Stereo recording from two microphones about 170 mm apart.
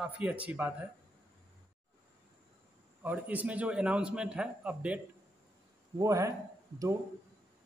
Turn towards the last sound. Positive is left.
turn(degrees=-20)  # may be behind; listen again after turning